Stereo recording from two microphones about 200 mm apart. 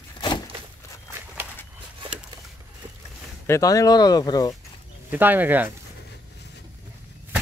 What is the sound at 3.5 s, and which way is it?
Speech, 15° left (ahead or behind).